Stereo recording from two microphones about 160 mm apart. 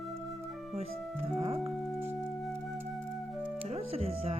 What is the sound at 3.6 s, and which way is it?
Music, 40° right (ahead or behind).